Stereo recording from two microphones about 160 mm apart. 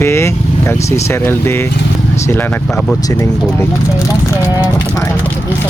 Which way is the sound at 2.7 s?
Centre (ahead or behind).